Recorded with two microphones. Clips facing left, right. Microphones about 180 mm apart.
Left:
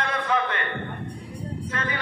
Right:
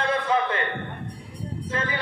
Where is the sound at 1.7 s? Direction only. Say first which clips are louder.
Right 3 dB; 30° right (ahead or behind).